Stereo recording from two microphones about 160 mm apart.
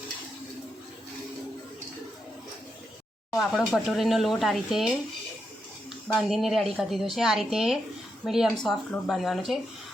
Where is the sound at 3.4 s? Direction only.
Centre (ahead or behind).